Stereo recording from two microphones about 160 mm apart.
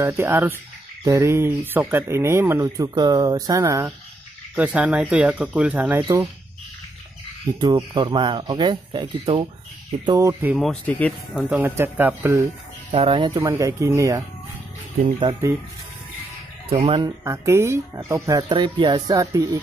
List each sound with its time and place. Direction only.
0.0 s speech: 15° right (ahead or behind)
4.6 s speech: 5° right (ahead or behind)
7.6 s speech: 25° right (ahead or behind)
10.0 s speech: 20° right (ahead or behind)
10.6 s speech: 5° left (ahead or behind)
11.3 s speech: 5° right (ahead or behind)
12.9 s speech: 35° right (ahead or behind); by 14.2 s 20° right (ahead or behind)
16.6 s speech: 35° right (ahead or behind)
17.0 s speech: 20° right (ahead or behind)